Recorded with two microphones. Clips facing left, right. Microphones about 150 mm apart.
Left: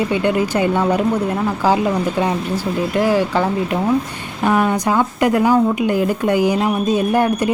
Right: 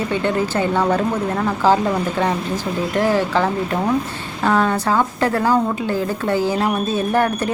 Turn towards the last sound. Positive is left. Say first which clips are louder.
# left 2 dB
turn(degrees=15)  # may be behind; listen again after turning